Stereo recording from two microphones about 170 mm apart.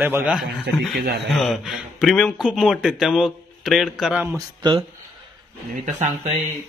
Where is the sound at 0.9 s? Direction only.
70° right (ahead or behind).